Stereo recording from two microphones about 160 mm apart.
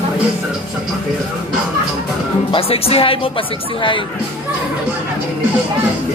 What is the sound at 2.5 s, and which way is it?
Speech, 35° left (ahead or behind).